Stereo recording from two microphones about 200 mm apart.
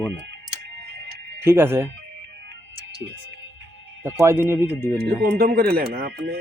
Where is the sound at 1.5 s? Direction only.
10° right (ahead or behind).